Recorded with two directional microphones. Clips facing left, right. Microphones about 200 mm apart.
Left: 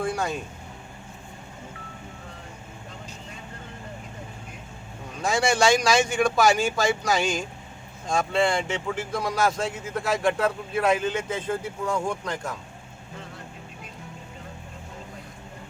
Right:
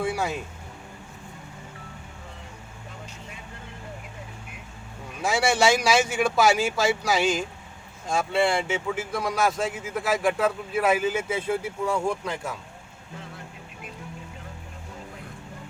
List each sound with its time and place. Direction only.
0.0 s vehicle: 5° right (ahead or behind)
5.2 s speech: 5° right (ahead or behind)